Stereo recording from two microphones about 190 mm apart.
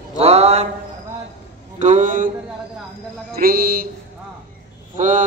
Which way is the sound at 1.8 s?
40° right (ahead or behind).